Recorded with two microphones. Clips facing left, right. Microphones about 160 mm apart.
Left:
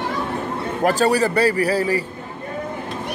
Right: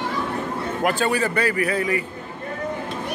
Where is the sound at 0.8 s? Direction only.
40° left (ahead or behind).